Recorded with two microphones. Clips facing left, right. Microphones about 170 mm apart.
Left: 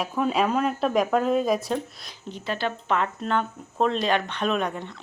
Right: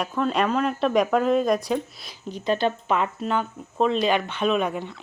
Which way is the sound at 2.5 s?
20° right (ahead or behind).